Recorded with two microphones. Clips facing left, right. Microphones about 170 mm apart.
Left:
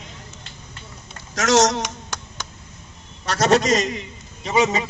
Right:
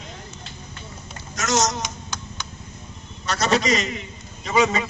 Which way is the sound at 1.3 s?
90° left.